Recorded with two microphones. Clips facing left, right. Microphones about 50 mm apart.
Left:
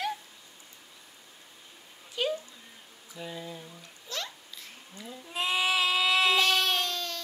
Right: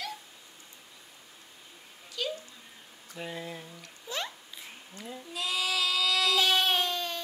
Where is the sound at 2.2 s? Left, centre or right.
Left.